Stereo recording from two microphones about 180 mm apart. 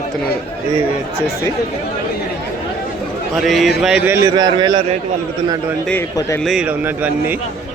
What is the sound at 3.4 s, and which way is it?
Speech, centre (ahead or behind).